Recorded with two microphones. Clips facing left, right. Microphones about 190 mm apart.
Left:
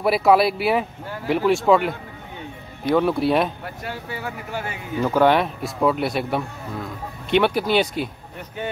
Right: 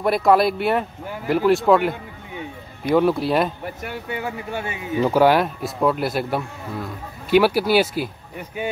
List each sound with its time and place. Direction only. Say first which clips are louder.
0.0 s speech: even; 5° left (ahead or behind)
3.8 s speech: right 2 dB; 20° right (ahead or behind)
5.1 s speech: even; 5° right (ahead or behind)